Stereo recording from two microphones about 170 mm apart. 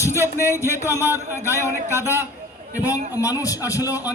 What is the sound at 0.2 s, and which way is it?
Speech, 15° right (ahead or behind).